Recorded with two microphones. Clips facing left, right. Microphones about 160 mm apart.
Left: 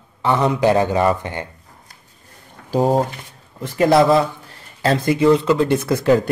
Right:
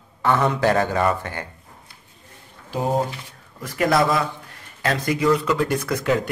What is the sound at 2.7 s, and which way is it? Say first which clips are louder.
A man's voice: left 6 dB; 35° left (ahead or behind).